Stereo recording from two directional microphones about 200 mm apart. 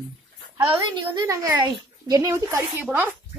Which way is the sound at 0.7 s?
25° right (ahead or behind).